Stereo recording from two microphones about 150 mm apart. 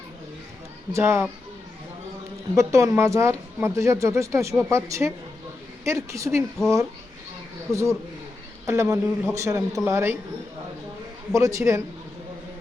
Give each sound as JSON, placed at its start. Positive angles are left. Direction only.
{"t": 0.9, "sound": "speech", "side_deg": -15}
{"t": 2.6, "sound": "speech", "side_deg": -20}
{"t": 7.7, "sound": "speech", "side_deg": -20}
{"t": 11.3, "sound": "speech", "side_deg": -20}